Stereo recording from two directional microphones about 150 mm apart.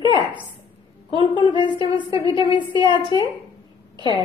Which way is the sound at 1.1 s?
35° left (ahead or behind).